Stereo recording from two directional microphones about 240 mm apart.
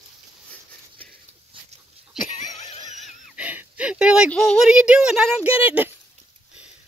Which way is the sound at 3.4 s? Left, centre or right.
Centre.